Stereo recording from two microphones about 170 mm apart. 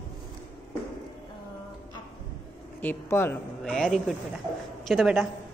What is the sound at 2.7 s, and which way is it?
Speech, 10° left (ahead or behind).